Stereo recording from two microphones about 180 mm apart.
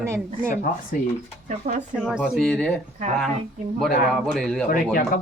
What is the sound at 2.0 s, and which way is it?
Speech, 5° right (ahead or behind).